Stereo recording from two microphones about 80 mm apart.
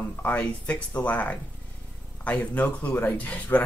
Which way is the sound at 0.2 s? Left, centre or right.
Centre.